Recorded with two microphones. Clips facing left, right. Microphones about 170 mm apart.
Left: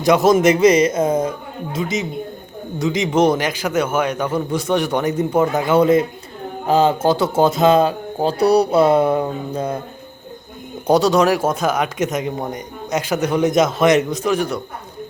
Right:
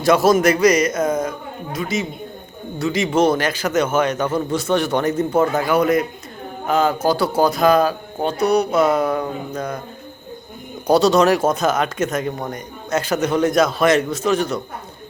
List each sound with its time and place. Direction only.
0.0 s speech: 20° left (ahead or behind)
10.8 s speech: 15° left (ahead or behind)